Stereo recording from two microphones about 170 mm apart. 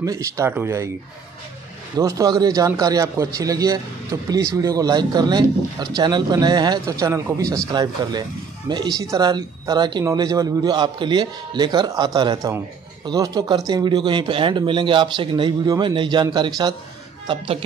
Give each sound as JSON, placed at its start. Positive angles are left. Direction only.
{"t": 0.0, "sound": "speech", "side_deg": -20}
{"t": 2.0, "sound": "speech", "side_deg": -20}